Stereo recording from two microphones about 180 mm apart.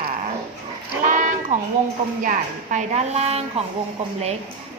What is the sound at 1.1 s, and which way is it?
A woman's voice, 45° right (ahead or behind).